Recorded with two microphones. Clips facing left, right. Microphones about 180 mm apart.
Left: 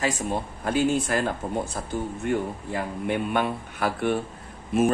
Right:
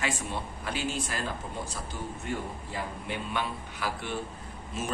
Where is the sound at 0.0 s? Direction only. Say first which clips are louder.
Left 6 dB; 45° left (ahead or behind).